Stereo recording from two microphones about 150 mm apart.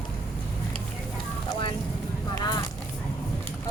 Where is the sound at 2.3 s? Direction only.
25° left (ahead or behind).